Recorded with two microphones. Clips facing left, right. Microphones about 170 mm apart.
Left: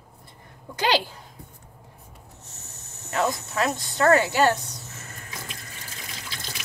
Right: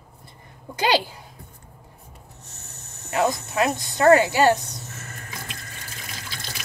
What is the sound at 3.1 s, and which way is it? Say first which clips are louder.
Speech: right 3 dB; 10° right (ahead or behind).